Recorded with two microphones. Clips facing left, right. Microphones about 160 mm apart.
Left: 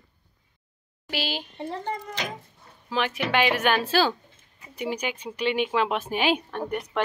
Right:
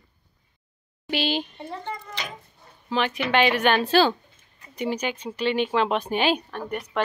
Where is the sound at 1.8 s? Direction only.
45° left (ahead or behind).